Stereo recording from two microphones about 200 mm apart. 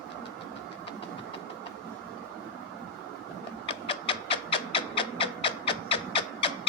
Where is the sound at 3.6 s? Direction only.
25° left (ahead or behind).